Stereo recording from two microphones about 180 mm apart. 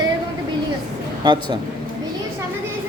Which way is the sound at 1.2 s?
25° right (ahead or behind).